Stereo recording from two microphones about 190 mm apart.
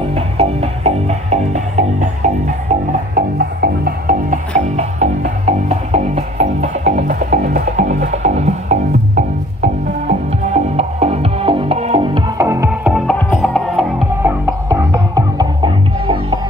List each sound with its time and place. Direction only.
0.1 s music: 30° right (ahead or behind); by 14.0 s centre (ahead or behind)
14.2 s music: 15° right (ahead or behind)